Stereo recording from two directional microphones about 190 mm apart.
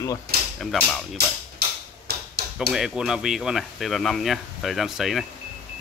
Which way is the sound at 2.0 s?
60° right (ahead or behind).